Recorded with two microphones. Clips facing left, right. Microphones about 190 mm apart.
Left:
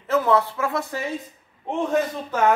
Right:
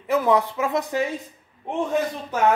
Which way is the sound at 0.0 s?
15° right (ahead or behind).